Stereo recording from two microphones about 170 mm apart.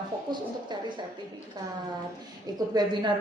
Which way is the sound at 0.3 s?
25° right (ahead or behind).